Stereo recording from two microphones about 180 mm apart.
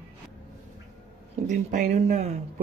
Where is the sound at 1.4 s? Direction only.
45° right (ahead or behind).